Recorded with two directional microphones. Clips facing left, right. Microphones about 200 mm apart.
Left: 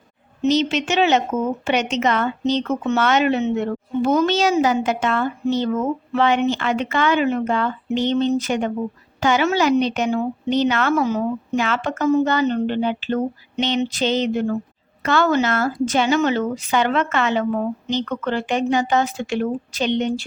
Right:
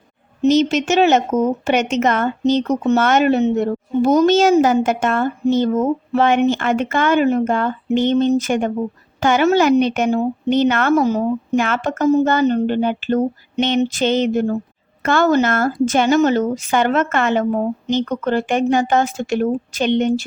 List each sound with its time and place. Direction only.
0.4 s speech: 45° right (ahead or behind)